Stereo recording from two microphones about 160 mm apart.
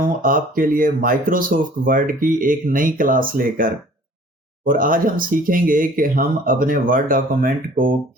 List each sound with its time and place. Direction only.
0.0 s speech: 60° right (ahead or behind)